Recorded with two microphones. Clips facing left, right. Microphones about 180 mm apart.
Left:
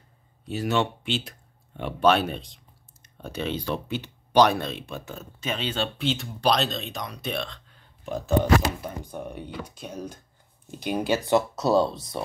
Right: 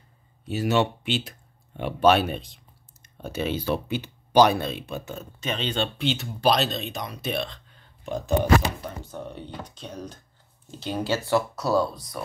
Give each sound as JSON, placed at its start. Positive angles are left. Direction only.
{"t": 0.5, "sound": "speech", "side_deg": -5}
{"t": 8.8, "sound": "speech", "side_deg": 15}